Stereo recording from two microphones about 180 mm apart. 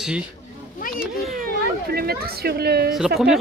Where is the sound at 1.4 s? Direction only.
55° right (ahead or behind).